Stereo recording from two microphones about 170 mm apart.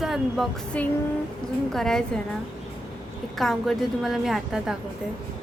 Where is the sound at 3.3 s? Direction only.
Centre (ahead or behind).